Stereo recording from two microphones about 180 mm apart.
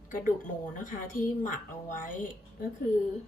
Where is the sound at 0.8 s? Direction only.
50° left (ahead or behind).